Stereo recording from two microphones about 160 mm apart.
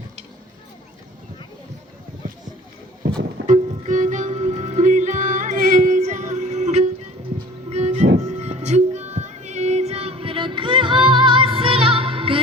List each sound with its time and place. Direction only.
3.4 s music: 50° right (ahead or behind); by 12.4 s 35° right (ahead or behind)